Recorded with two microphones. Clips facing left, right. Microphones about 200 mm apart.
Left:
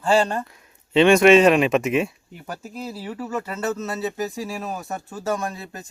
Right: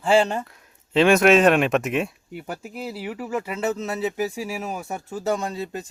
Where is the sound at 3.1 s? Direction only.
10° right (ahead or behind).